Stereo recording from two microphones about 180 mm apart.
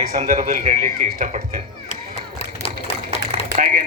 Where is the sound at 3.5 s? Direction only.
45° right (ahead or behind).